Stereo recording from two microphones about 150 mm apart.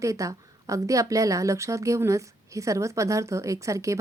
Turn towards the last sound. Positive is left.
turn(degrees=-20)  # may be behind; listen again after turning